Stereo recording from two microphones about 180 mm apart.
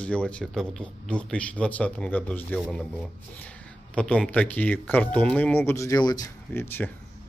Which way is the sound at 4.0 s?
5° left (ahead or behind).